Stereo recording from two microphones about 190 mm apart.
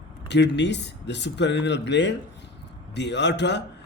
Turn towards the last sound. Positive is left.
turn(degrees=65)  # may be behind; listen again after turning